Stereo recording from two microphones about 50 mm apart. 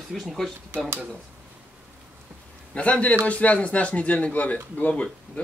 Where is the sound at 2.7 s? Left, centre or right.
Left.